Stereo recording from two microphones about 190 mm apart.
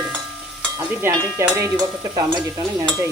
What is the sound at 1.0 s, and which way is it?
Stir, 15° right (ahead or behind).